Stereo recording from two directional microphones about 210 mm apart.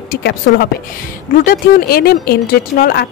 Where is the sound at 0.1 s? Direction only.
50° left (ahead or behind).